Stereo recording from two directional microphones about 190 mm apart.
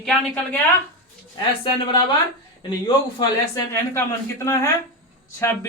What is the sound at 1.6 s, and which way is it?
Speech, 25° left (ahead or behind).